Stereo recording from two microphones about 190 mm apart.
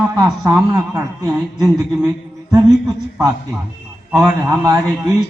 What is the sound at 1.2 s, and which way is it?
A man's voice, 20° right (ahead or behind).